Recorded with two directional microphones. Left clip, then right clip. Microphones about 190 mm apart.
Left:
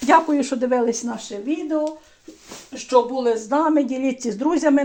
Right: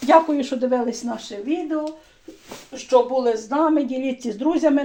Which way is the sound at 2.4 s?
20° left (ahead or behind).